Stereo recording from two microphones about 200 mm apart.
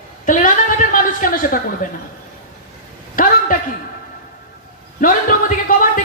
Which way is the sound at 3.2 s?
45° left (ahead or behind).